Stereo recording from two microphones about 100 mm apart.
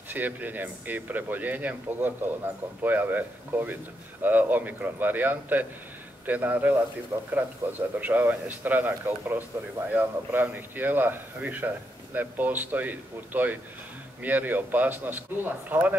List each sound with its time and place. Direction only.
0.1 s a man's voice: 15° right (ahead or behind)